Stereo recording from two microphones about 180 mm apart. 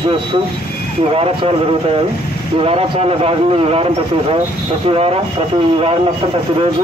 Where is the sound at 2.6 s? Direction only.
30° right (ahead or behind).